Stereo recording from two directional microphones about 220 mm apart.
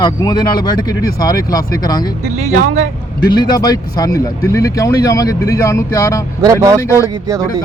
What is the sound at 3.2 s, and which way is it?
Speech, 20° left (ahead or behind).